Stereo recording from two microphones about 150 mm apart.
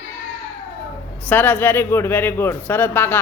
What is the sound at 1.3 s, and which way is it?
A man's voice, 10° left (ahead or behind).